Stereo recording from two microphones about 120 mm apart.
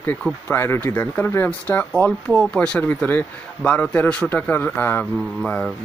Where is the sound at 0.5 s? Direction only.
20° left (ahead or behind).